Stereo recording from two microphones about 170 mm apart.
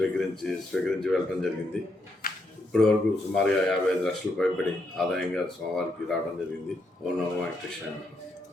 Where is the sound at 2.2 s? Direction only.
60° left (ahead or behind).